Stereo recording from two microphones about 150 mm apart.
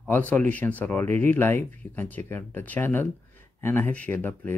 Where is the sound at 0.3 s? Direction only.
10° left (ahead or behind).